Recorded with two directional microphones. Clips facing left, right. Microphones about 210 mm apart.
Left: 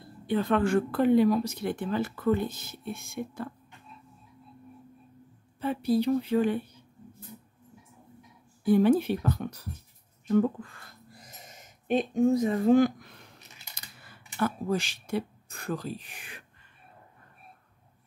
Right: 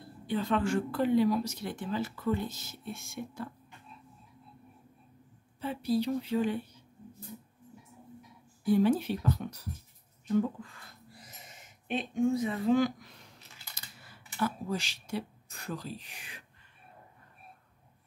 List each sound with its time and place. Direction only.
0.3 s speech: 55° left (ahead or behind)
5.6 s speech: 55° left (ahead or behind)
8.6 s speech: 60° left (ahead or behind)
11.2 s a sound: 40° left (ahead or behind)
14.0 s speech: 55° left (ahead or behind)